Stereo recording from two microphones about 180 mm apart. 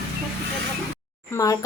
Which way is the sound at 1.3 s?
20° left (ahead or behind).